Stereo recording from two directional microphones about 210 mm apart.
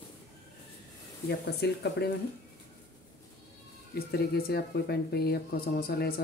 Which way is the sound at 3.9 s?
50° left (ahead or behind).